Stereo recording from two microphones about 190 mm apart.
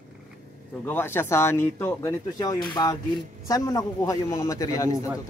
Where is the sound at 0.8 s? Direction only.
10° left (ahead or behind).